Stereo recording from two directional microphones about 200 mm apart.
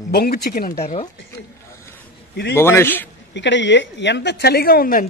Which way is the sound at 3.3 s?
65° left (ahead or behind).